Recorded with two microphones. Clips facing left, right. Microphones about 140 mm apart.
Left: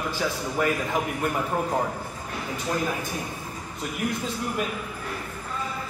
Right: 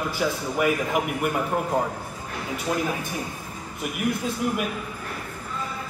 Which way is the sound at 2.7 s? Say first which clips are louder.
Right 2 dB; 10° right (ahead or behind).